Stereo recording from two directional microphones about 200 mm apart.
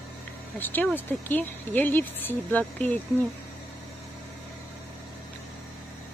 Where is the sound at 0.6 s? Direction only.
10° left (ahead or behind).